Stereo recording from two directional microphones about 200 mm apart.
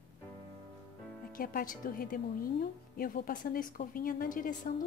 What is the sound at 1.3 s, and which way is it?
A woman's voice, 45° left (ahead or behind).